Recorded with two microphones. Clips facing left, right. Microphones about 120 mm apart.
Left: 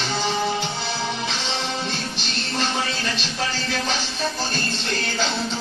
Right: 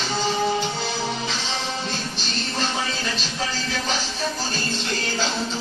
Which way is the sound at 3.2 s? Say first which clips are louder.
Left 1 dB; 40° right (ahead or behind).